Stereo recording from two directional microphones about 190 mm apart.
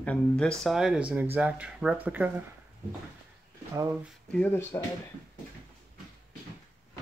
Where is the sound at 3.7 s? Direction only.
15° right (ahead or behind).